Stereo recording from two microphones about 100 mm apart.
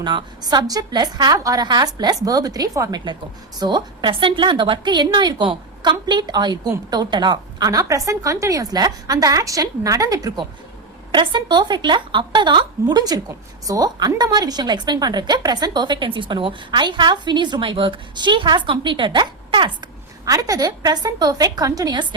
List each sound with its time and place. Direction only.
0.0 s a woman's voice: 50° right (ahead or behind)
4.1 s speech: 55° right (ahead or behind); by 10.4 s 40° right (ahead or behind)
11.1 s speech: 50° right (ahead or behind)
20.2 s a woman's voice: 35° right (ahead or behind)